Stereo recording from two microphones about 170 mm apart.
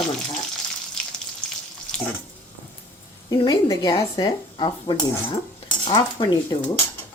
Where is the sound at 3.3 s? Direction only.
25° left (ahead or behind).